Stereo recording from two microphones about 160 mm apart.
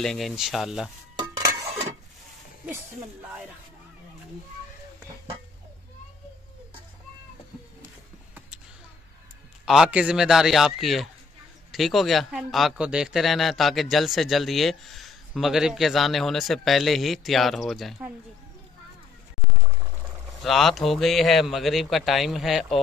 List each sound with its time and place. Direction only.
0.0 s speech: centre (ahead or behind)
1.2 s stir: 20° right (ahead or behind)
9.7 s speech: 5° right (ahead or behind)
20.4 s speech: centre (ahead or behind)